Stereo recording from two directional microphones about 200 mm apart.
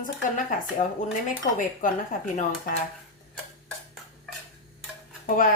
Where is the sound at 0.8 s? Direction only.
40° left (ahead or behind).